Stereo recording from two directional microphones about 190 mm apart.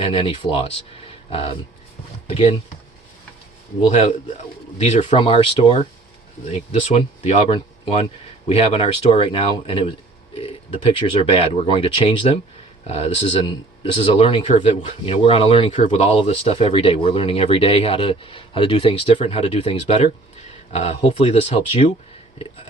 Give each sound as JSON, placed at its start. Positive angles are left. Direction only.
{"t": 0.0, "sound": "speech", "side_deg": 30}
{"t": 4.8, "sound": "speech", "side_deg": 35}
{"t": 8.4, "sound": "speech", "side_deg": 30}